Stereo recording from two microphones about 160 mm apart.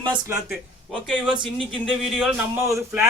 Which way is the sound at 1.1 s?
5° right (ahead or behind).